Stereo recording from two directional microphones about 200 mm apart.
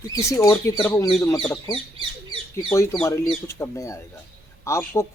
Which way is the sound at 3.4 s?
15° left (ahead or behind).